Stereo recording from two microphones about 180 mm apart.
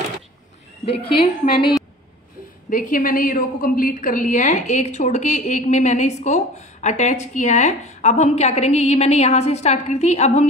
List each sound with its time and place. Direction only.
0.8 s a woman's voice: 30° left (ahead or behind)
2.7 s a woman's voice: 50° left (ahead or behind)